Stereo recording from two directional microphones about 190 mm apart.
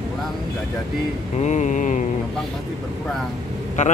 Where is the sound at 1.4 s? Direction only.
40° left (ahead or behind).